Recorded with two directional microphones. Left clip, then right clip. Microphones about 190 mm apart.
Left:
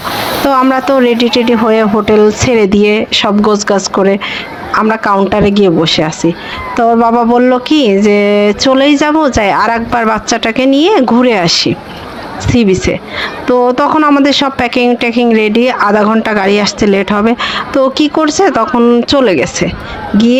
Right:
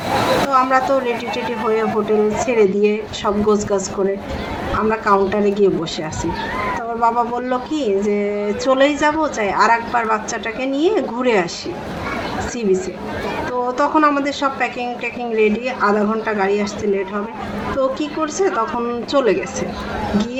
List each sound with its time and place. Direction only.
0.4 s speech: 45° left (ahead or behind)
5.0 s speech: 45° left (ahead or behind)
13.7 s speech: 45° left (ahead or behind)